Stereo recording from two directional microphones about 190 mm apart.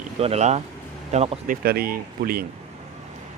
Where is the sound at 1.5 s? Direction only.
55° right (ahead or behind).